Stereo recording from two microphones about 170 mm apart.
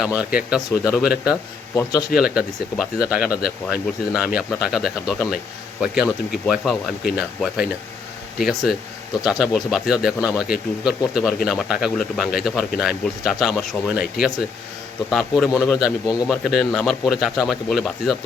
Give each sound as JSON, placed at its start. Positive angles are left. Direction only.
{"t": 0.2, "sound": "a man's voice", "side_deg": -5}
{"t": 1.7, "sound": "a man's voice", "side_deg": 20}
{"t": 2.1, "sound": "a man's voice", "side_deg": -5}